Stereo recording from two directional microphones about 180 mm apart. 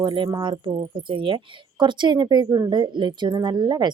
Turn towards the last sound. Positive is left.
turn(degrees=-25)  # may be behind; listen again after turning